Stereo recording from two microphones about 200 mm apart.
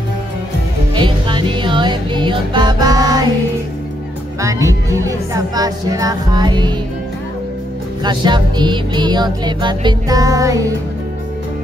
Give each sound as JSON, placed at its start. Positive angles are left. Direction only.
{"t": 0.9, "sound": "music", "side_deg": -25}
{"t": 4.4, "sound": "speech", "side_deg": -15}
{"t": 8.0, "sound": "music", "side_deg": -20}